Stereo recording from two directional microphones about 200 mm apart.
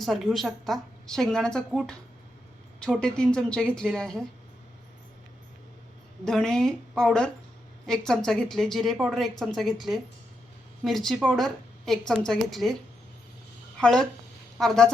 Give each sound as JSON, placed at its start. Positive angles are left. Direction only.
{"t": 0.0, "sound": "a woman's voice", "side_deg": 0}
{"t": 6.2, "sound": "a woman's voice", "side_deg": 5}
{"t": 13.7, "sound": "a woman's voice", "side_deg": 5}